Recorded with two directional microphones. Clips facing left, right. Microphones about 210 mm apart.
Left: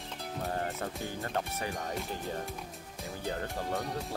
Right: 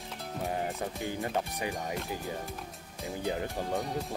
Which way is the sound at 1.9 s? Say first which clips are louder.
Right 1 dB; centre (ahead or behind).